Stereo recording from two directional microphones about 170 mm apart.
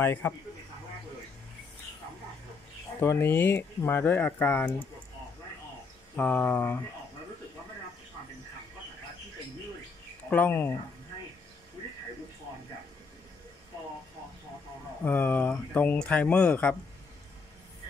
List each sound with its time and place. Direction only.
0.0 s speech: 10° left (ahead or behind)
3.0 s speech: 15° left (ahead or behind)
6.1 s speech: 10° left (ahead or behind)
10.3 s speech: 10° left (ahead or behind)
15.0 s speech: 10° left (ahead or behind)